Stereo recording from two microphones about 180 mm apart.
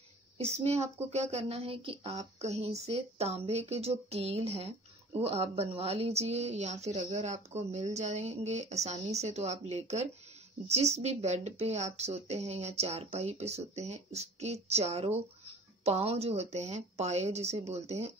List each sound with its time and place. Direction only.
0.4 s a woman's voice: 35° right (ahead or behind)